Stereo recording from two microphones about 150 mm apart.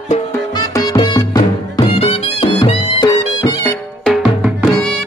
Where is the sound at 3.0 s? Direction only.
25° left (ahead or behind).